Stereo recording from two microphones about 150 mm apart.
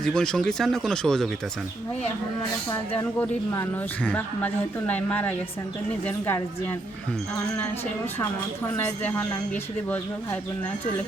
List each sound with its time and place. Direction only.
0.0 s speech: 5° left (ahead or behind)
3.0 s speech: 15° left (ahead or behind)
8.7 s speech: 15° left (ahead or behind)